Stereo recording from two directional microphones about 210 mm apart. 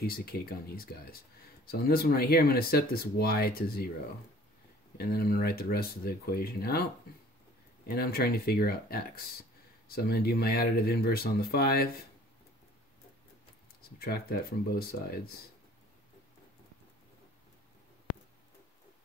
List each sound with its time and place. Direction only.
0.0 s speech: 45° left (ahead or behind)
4.9 s speech: 45° left (ahead or behind)
13.9 s speech: 45° left (ahead or behind)